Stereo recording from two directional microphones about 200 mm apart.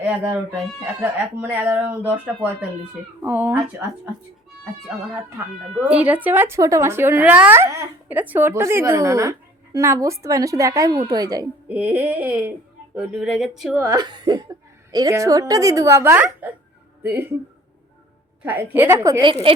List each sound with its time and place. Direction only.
0.0 s speech: 10° right (ahead or behind)
5.9 s speech: 5° right (ahead or behind)
11.7 s speech: 10° right (ahead or behind)
13.7 s speech: 20° right (ahead or behind)
18.4 s speech: 10° right (ahead or behind); by 19.5 s 25° right (ahead or behind)